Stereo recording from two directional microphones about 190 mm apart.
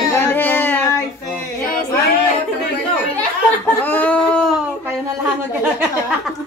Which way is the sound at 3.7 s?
10° left (ahead or behind).